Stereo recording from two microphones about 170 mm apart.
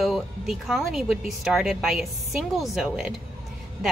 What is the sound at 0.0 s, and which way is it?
Speech, centre (ahead or behind).